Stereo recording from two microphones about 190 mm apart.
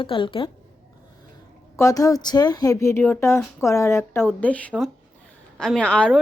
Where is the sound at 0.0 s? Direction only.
25° left (ahead or behind).